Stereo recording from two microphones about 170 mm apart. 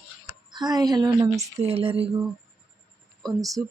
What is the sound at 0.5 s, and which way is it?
Speech, 25° right (ahead or behind).